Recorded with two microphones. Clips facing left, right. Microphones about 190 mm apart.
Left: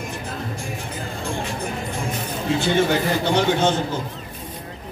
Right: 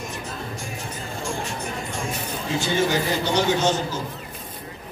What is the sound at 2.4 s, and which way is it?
A man's voice, 55° left (ahead or behind).